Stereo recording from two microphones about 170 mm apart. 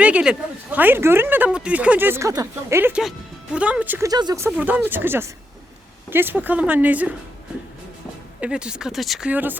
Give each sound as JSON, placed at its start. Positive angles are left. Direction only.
{"t": 0.0, "sound": "speech", "side_deg": -5}
{"t": 4.4, "sound": "speech", "side_deg": -10}
{"t": 8.4, "sound": "speech", "side_deg": -5}